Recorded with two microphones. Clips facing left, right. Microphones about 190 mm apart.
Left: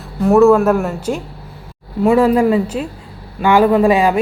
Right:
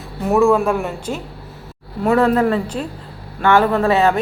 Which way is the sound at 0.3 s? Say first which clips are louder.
Left 5 dB; centre (ahead or behind).